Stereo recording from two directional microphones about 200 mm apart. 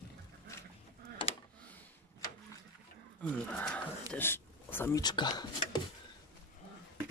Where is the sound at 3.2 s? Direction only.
5° left (ahead or behind); by 5.8 s 20° left (ahead or behind).